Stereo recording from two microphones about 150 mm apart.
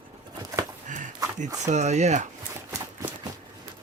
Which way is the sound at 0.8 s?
55° right (ahead or behind).